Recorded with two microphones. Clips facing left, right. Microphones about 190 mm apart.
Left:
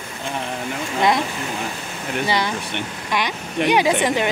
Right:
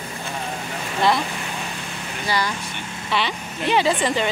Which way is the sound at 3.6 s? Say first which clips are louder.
Left 5 dB; 75° left (ahead or behind).